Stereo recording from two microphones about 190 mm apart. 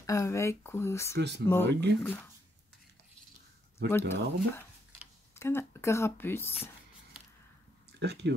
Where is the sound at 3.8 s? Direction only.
10° left (ahead or behind).